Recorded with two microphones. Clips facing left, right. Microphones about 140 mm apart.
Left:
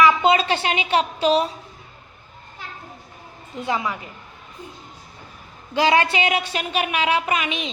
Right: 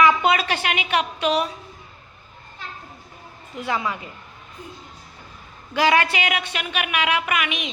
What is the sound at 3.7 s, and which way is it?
Speech, 20° left (ahead or behind).